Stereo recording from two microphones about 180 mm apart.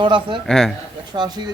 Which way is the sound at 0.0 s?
25° right (ahead or behind).